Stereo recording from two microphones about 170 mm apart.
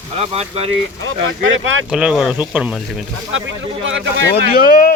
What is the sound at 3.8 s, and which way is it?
Speech, 90° right.